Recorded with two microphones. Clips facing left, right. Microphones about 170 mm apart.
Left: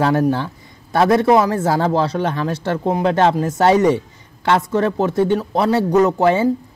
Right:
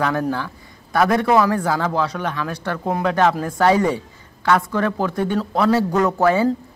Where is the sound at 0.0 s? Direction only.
25° left (ahead or behind).